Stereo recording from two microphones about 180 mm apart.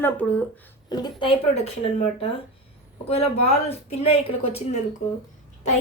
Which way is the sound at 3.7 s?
35° left (ahead or behind).